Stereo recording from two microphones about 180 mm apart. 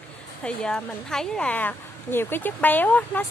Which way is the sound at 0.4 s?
5° left (ahead or behind).